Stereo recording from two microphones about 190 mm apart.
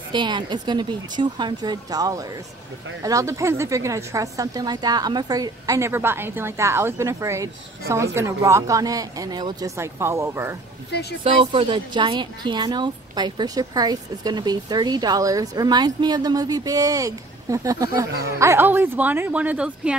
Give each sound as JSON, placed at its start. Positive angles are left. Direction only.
{"t": 0.1, "sound": "a woman's voice", "side_deg": -25}
{"t": 10.9, "sound": "speech", "side_deg": 60}
{"t": 11.2, "sound": "a woman's voice", "side_deg": -30}